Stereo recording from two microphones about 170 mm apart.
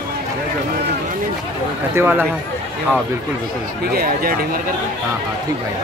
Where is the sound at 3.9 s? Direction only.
60° right (ahead or behind).